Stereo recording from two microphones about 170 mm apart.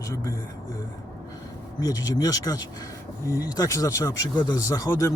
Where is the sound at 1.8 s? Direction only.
20° left (ahead or behind).